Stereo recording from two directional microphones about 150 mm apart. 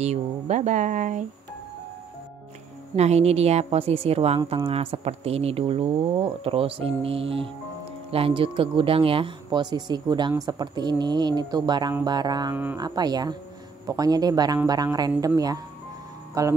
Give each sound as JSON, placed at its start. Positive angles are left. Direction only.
{"t": 0.0, "sound": "a woman's voice", "side_deg": -50}
{"t": 3.0, "sound": "a woman's voice", "side_deg": -45}